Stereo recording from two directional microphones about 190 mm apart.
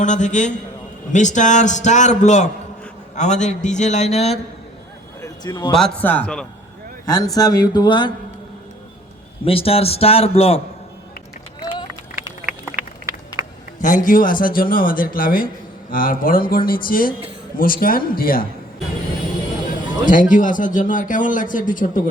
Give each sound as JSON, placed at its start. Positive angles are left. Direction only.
{"t": 0.0, "sound": "a man's voice", "side_deg": 40}
{"t": 5.2, "sound": "a sound", "side_deg": 20}
{"t": 5.7, "sound": "speech", "side_deg": 5}
{"t": 7.0, "sound": "a man's voice", "side_deg": 20}
{"t": 9.4, "sound": "a man's voice", "side_deg": 30}
{"t": 11.7, "sound": "run", "side_deg": 25}
{"t": 12.7, "sound": "a sound", "side_deg": -15}
{"t": 13.7, "sound": "a man's voice", "side_deg": 45}
{"t": 20.1, "sound": "a man's voice", "side_deg": 45}